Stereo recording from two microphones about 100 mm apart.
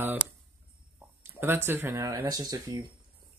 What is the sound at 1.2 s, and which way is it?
Speech, 25° right (ahead or behind).